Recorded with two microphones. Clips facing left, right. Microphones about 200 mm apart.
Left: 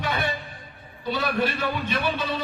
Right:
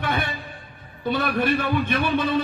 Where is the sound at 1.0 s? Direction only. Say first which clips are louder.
Right 3 dB; 55° right (ahead or behind).